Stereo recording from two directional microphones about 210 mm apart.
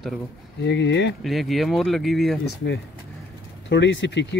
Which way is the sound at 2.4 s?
55° left (ahead or behind).